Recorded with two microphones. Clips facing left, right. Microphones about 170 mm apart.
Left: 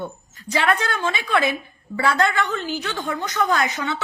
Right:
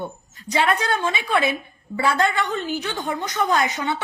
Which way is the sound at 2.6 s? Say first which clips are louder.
Right 1 dB; 20° right (ahead or behind).